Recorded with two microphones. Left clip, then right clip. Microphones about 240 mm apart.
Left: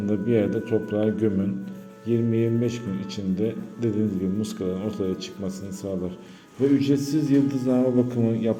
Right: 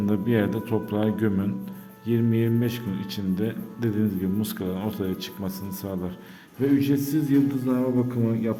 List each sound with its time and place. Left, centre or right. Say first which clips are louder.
0.0 s a man's voice: left 2 dB; centre